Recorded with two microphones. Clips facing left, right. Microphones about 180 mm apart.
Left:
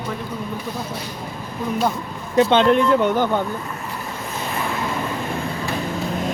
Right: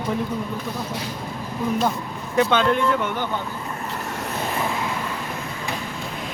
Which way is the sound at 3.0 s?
40° left (ahead or behind).